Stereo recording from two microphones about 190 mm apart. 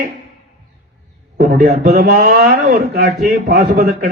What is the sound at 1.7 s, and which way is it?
Speech, 45° right (ahead or behind).